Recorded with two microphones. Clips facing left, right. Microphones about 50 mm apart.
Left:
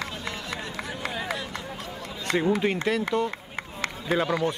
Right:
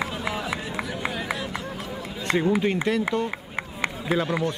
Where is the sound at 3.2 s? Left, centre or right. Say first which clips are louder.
Right 2 dB; centre.